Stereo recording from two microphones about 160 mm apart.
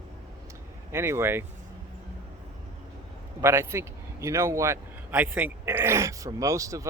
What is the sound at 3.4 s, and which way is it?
Speech, 15° right (ahead or behind).